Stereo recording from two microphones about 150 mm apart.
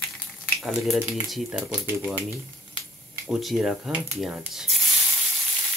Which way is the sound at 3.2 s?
Centre (ahead or behind).